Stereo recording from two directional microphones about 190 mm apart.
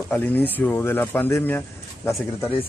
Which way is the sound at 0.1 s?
10° left (ahead or behind).